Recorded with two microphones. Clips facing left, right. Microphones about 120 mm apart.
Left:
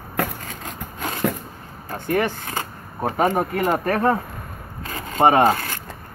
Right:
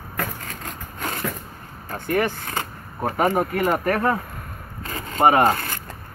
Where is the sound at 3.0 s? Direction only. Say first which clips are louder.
Left 1 dB; centre (ahead or behind).